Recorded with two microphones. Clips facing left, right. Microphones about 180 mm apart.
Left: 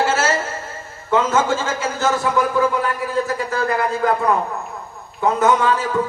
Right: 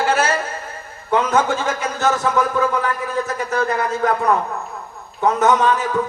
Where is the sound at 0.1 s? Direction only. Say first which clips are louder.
Right 1 dB; 15° right (ahead or behind).